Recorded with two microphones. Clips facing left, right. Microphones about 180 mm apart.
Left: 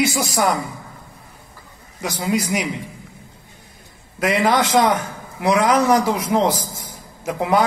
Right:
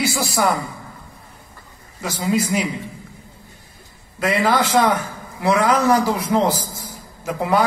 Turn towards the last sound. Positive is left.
turn(degrees=15)  # may be behind; listen again after turning